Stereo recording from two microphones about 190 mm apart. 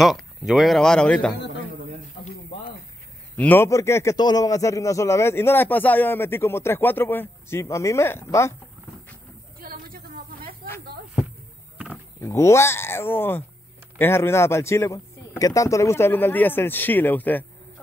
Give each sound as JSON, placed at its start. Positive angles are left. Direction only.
{"t": 0.0, "sound": "speech", "side_deg": 0}
{"t": 3.3, "sound": "a man's voice", "side_deg": 10}
{"t": 9.6, "sound": "a sound", "side_deg": -50}
{"t": 12.2, "sound": "a man's voice", "side_deg": 15}